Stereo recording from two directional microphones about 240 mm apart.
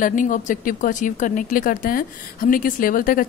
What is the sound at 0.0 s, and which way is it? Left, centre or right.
Speech, left.